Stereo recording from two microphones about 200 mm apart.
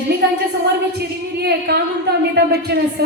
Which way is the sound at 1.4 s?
55° right (ahead or behind).